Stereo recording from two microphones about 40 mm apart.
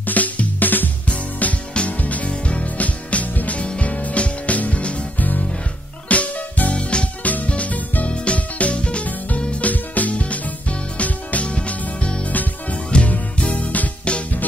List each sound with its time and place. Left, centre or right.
0.0 s music: left
6.0 s music: left
6.8 s music: left
7.2 s music: left